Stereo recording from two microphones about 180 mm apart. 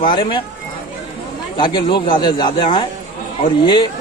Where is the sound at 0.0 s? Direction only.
30° left (ahead or behind).